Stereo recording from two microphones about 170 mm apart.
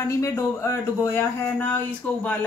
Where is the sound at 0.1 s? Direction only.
15° left (ahead or behind).